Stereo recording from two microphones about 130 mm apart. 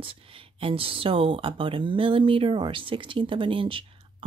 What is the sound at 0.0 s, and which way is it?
Speech, 45° right (ahead or behind).